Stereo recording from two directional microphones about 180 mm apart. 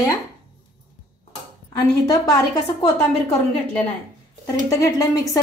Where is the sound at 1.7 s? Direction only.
20° left (ahead or behind).